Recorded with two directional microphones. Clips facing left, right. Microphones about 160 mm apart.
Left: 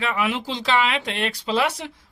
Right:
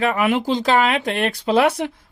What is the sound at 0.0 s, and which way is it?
A man's voice, 50° right (ahead or behind).